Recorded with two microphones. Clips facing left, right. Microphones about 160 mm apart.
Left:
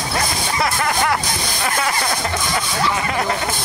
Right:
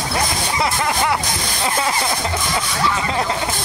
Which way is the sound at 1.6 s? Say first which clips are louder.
Right 1 dB; 20° right (ahead or behind).